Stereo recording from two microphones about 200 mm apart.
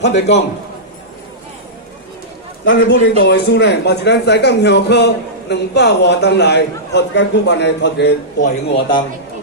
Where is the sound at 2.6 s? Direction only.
65° left (ahead or behind).